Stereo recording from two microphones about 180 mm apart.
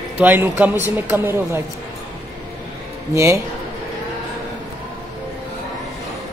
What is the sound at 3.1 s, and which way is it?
Speech, 15° right (ahead or behind).